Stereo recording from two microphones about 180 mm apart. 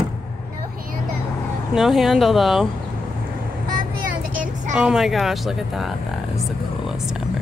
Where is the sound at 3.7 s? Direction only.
50° right (ahead or behind).